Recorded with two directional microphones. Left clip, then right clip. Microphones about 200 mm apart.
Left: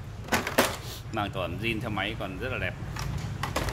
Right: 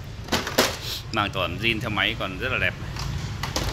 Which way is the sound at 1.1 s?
Centre (ahead or behind).